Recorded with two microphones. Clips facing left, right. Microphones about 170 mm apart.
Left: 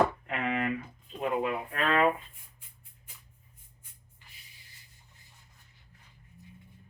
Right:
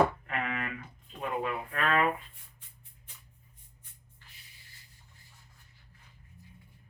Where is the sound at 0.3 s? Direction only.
30° left (ahead or behind).